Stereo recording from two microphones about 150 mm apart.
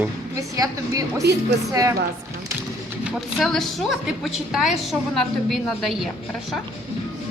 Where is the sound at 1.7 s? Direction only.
25° right (ahead or behind).